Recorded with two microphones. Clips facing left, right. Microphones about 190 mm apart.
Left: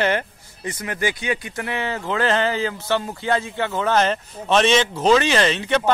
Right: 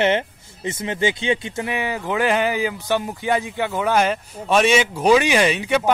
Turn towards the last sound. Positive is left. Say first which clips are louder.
# right 1 dB
turn(degrees=-10)  # may be behind; listen again after turning